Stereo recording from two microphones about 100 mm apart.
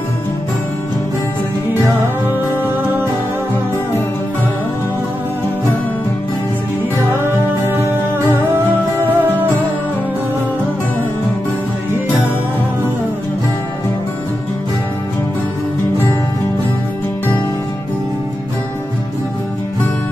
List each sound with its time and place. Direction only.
7.6 s music: 25° right (ahead or behind)